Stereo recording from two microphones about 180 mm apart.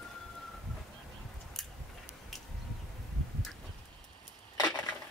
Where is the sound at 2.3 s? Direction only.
Centre (ahead or behind).